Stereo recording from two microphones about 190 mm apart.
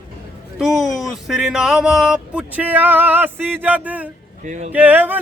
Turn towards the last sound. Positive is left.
turn(degrees=-10)  # may be behind; listen again after turning